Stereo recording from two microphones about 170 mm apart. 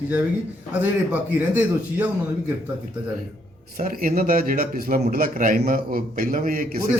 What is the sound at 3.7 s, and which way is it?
A man's voice, 55° right (ahead or behind).